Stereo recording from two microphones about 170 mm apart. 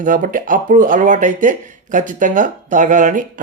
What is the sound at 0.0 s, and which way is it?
Speech, 50° right (ahead or behind).